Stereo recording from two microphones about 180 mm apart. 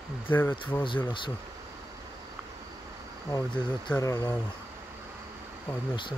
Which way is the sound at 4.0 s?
20° left (ahead or behind).